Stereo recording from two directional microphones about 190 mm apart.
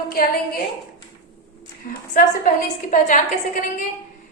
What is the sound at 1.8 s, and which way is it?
A woman's voice, 45° left (ahead or behind).